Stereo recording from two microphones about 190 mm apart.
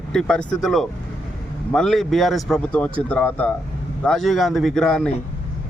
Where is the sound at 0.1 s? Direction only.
5° left (ahead or behind).